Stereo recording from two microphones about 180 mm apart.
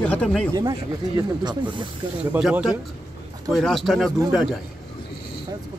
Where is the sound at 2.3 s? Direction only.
5° right (ahead or behind).